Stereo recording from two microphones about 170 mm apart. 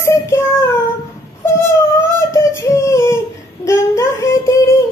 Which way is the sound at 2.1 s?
15° left (ahead or behind).